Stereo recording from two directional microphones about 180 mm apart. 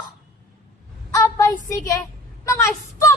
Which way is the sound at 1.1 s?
20° left (ahead or behind).